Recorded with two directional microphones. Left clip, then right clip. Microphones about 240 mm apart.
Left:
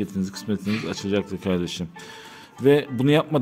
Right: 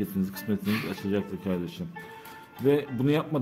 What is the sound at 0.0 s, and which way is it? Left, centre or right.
Speech, centre.